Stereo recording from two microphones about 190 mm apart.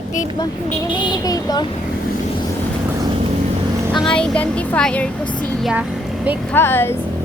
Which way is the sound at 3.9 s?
5° left (ahead or behind).